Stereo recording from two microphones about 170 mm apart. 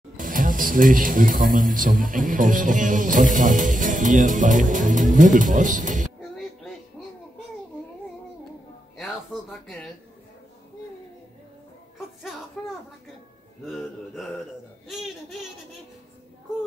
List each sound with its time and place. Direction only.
0.2 s speech: 50° right (ahead or behind)
12.6 s a sound: 5° left (ahead or behind)
13.7 s a man's voice: centre (ahead or behind)